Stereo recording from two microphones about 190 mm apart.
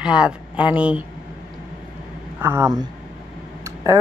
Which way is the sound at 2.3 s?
10° right (ahead or behind).